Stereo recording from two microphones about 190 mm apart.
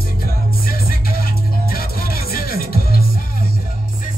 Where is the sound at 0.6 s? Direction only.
50° left (ahead or behind).